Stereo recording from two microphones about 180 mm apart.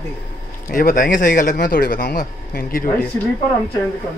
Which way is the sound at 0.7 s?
50° left (ahead or behind).